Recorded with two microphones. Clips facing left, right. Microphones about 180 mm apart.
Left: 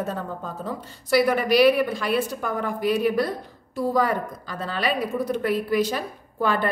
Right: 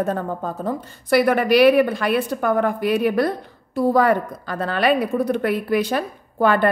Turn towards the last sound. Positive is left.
turn(degrees=-60)  # may be behind; listen again after turning